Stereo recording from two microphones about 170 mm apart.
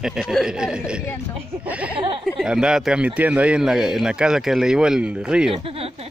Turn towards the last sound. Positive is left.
turn(degrees=-35)  # may be behind; listen again after turning